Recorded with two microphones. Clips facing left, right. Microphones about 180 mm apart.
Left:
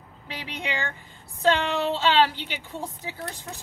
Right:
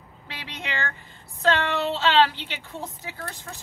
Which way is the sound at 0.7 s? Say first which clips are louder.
Even; 10° left (ahead or behind).